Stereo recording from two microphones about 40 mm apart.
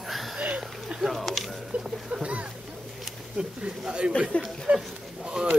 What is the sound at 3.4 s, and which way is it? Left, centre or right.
Speech, right.